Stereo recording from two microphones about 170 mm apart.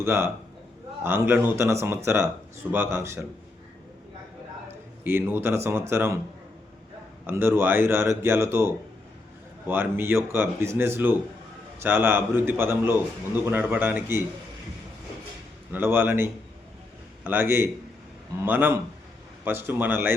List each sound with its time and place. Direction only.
0.0 s a man's voice: 15° right (ahead or behind)
5.0 s a man's voice: 15° right (ahead or behind)
7.3 s a man's voice: 15° right (ahead or behind)
15.7 s a man's voice: 15° right (ahead or behind)